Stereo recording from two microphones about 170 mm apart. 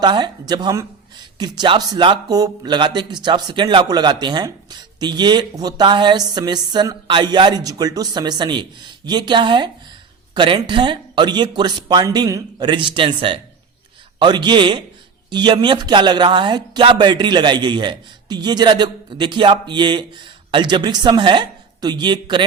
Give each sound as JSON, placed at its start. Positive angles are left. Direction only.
{"t": 0.0, "sound": "speech", "side_deg": -25}